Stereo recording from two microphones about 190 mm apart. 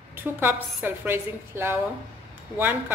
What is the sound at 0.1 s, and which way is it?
A woman's voice, 10° right (ahead or behind).